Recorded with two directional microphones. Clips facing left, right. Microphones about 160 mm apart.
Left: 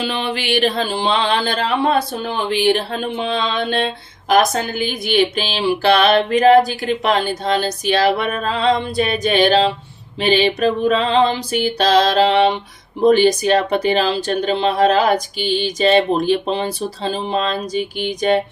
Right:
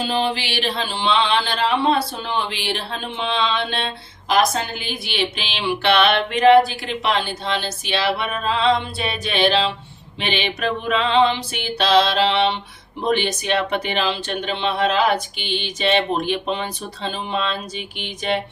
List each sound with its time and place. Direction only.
0.0 s mantra: 65° left (ahead or behind); by 3.8 s 45° left (ahead or behind)
4.3 s speech: 50° left (ahead or behind)
6.7 s mantra: 45° left (ahead or behind)
10.2 s speech: 40° left (ahead or behind)